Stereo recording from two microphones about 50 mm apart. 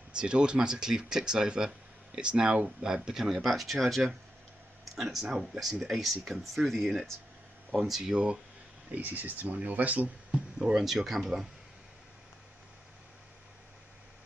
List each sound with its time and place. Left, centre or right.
0.1 s speech: centre
3.4 s speech: centre
8.9 s speech: right
10.3 s speech: centre